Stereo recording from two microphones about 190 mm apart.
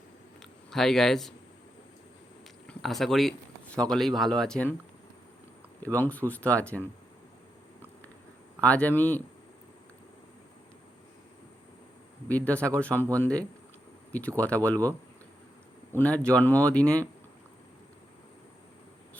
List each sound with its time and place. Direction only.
0.7 s speech: centre (ahead or behind)
2.6 s speech: centre (ahead or behind)
5.9 s speech: 10° left (ahead or behind)
8.6 s speech: 5° left (ahead or behind)
12.3 s speech: 5° left (ahead or behind)
16.0 s speech: 5° left (ahead or behind)